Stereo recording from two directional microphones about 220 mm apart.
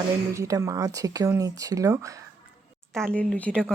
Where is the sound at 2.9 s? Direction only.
5° left (ahead or behind).